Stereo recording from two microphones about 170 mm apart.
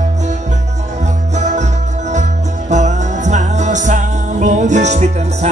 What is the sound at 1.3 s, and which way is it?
Music, 45° right (ahead or behind).